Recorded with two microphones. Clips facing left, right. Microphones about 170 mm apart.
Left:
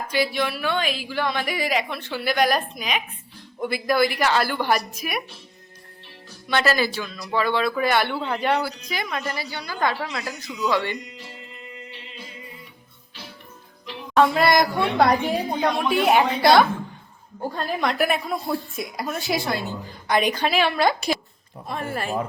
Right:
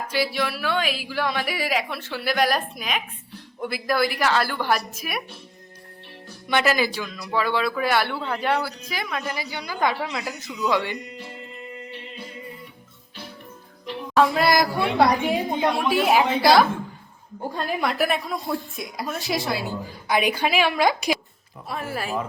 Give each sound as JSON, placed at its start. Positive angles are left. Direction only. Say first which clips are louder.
{"t": 0.1, "sound": "a woman's voice", "louder": "left 2 dB", "side_deg": -5}
{"t": 6.5, "sound": "a woman's voice", "louder": "even", "side_deg": -15}
{"t": 9.3, "sound": "a woman's voice", "louder": "even", "side_deg": -15}
{"t": 11.9, "sound": "music", "louder": "right 4 dB", "side_deg": -55}
{"t": 14.1, "sound": "a woman's voice", "louder": "left 1 dB", "side_deg": 0}